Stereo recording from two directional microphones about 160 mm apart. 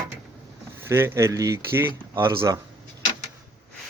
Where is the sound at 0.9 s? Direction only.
15° right (ahead or behind).